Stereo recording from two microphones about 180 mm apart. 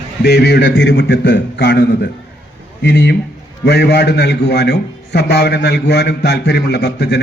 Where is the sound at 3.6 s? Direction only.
65° left (ahead or behind).